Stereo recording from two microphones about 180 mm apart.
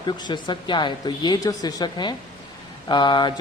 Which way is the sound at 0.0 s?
25° left (ahead or behind).